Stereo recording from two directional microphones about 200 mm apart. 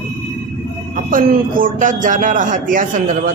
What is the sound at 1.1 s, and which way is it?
A man's voice, 45° right (ahead or behind).